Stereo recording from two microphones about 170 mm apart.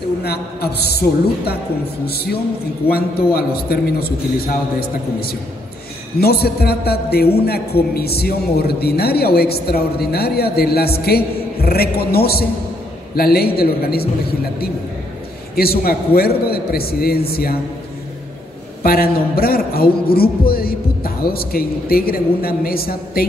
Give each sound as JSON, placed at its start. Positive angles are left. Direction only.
{"t": 0.2, "sound": "a man's voice", "side_deg": 70}
{"t": 2.9, "sound": "a man's voice", "side_deg": 65}
{"t": 15.5, "sound": "a man's voice", "side_deg": 65}
{"t": 18.8, "sound": "a man's voice", "side_deg": 60}